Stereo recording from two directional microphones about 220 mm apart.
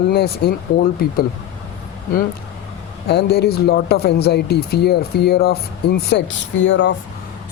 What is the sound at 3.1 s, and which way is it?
Speech, 45° left (ahead or behind).